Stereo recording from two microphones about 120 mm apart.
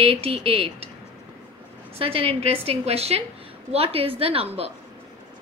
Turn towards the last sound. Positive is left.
turn(degrees=-50)  # may be behind; listen again after turning